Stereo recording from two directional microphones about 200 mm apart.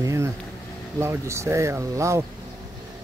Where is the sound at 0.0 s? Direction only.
15° right (ahead or behind).